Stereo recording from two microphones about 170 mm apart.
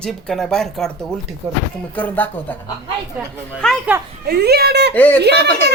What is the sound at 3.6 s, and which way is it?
Speech, 5° left (ahead or behind).